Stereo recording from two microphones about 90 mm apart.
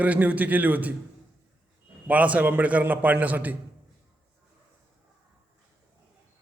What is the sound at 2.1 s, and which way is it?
A man's voice, 15° right (ahead or behind).